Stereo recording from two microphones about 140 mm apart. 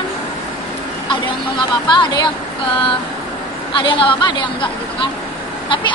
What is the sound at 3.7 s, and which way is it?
Speech, 35° left (ahead or behind).